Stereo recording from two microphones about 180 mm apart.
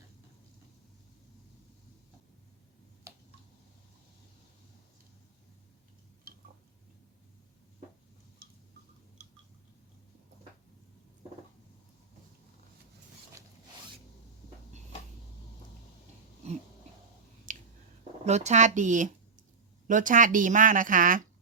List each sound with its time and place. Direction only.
17.5 s squish: 45° right (ahead or behind)
18.3 s speech: 40° right (ahead or behind)